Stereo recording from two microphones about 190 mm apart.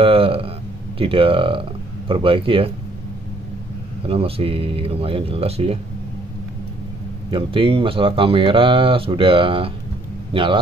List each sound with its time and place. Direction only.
0.0 s a sound: 30° right (ahead or behind)
0.9 s speech: 30° right (ahead or behind)
4.1 s speech: 30° right (ahead or behind)
7.2 s speech: 25° right (ahead or behind)